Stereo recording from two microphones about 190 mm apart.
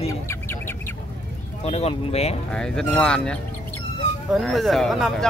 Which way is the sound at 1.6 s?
35° left (ahead or behind).